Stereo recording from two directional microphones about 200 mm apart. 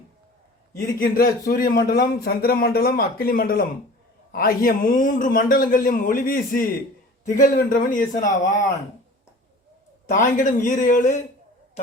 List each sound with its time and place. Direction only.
0.9 s a man's voice: 45° left (ahead or behind)
10.1 s speech: 40° left (ahead or behind)